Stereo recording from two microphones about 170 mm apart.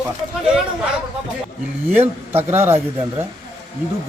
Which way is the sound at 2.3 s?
15° right (ahead or behind).